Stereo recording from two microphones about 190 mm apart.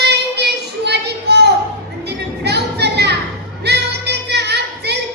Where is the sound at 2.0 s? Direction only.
60° right (ahead or behind).